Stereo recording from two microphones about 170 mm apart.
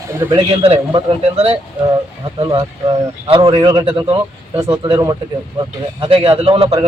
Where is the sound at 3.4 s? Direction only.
25° right (ahead or behind).